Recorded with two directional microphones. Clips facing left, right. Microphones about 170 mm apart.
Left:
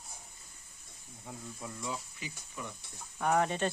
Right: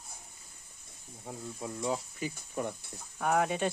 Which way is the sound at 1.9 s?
50° right (ahead or behind).